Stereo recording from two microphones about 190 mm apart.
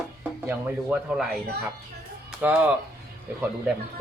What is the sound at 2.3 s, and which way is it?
Music, 5° right (ahead or behind).